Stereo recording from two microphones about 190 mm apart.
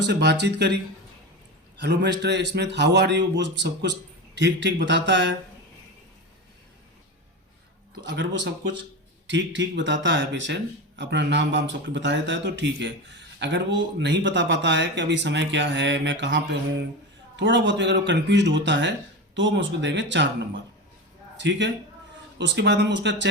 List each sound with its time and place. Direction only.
0.0 s a man's voice: 65° right (ahead or behind)
1.8 s a man's voice: 65° right (ahead or behind)
8.1 s speech: 75° right (ahead or behind)
21.3 s a man's voice: 65° right (ahead or behind)